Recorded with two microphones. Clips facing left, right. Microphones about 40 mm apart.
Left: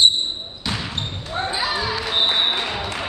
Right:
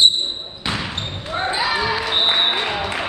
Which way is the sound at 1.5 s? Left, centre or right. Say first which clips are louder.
Right 4 dB; right.